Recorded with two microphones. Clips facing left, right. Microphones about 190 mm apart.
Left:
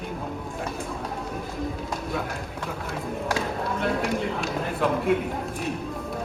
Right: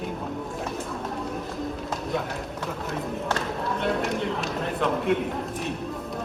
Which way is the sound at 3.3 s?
Centre (ahead or behind).